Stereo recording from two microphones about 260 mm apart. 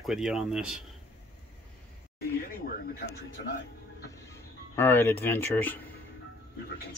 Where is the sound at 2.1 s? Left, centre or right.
Left.